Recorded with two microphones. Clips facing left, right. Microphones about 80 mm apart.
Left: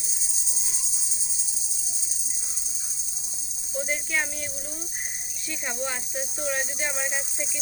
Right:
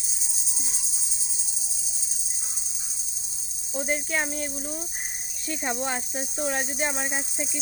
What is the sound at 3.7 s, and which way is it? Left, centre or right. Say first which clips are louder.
Cricket: right 1 dB; right.